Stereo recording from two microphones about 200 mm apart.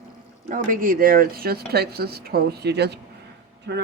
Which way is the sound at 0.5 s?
45° right (ahead or behind).